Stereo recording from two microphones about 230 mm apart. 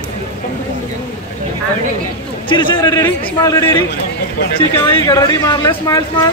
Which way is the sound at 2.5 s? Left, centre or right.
Centre.